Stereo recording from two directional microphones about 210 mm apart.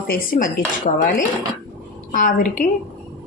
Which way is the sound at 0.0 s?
45° left (ahead or behind).